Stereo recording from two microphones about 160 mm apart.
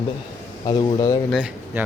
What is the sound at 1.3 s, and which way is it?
Speech, 10° right (ahead or behind).